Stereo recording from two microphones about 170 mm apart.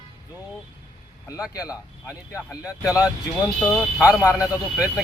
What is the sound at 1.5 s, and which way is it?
Speech, 20° left (ahead or behind).